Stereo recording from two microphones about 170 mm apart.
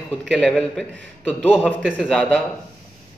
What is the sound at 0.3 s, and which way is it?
A man's voice, 5° left (ahead or behind).